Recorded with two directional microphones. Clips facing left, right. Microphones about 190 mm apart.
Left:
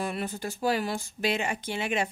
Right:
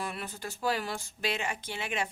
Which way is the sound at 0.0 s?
20° left (ahead or behind).